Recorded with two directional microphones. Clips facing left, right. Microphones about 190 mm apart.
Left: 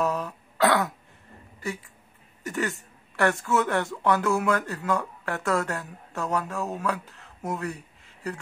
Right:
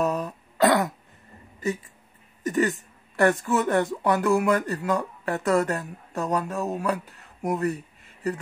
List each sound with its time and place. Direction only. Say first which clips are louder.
0.0 s throat clearing: right 2 dB; 15° right (ahead or behind)
2.4 s a woman's voice: right 6 dB; 15° right (ahead or behind)